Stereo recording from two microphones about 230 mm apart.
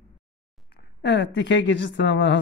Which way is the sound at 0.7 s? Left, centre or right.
Left.